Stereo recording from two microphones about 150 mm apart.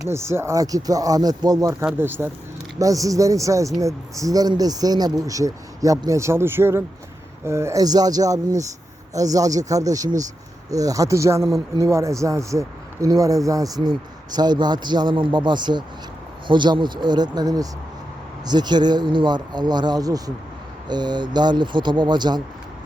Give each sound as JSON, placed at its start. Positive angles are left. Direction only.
{"t": 0.0, "sound": "speech", "side_deg": -15}
{"t": 1.8, "sound": "speech", "side_deg": -15}